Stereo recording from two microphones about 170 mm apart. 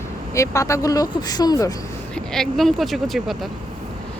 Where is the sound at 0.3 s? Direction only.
20° left (ahead or behind).